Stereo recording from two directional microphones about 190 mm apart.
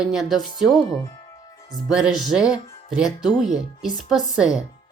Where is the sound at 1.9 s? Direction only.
5° right (ahead or behind).